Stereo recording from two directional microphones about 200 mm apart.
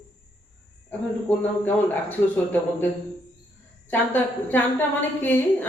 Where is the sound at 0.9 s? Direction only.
10° left (ahead or behind).